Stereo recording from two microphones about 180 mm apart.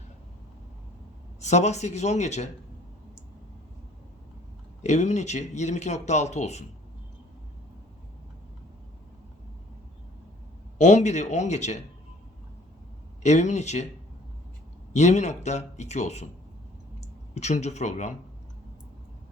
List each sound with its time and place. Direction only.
1.4 s speech: 40° left (ahead or behind)
4.8 s speech: 40° left (ahead or behind)
10.8 s speech: 40° left (ahead or behind)
13.2 s speech: 40° left (ahead or behind)
14.9 s speech: 40° left (ahead or behind)
17.3 s speech: 40° left (ahead or behind)